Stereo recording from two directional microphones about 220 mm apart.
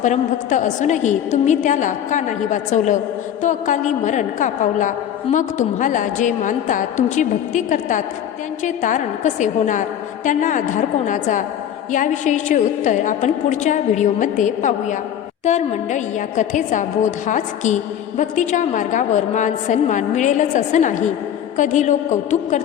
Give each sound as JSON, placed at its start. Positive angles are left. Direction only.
{"t": 0.0, "sound": "a woman's voice", "side_deg": 35}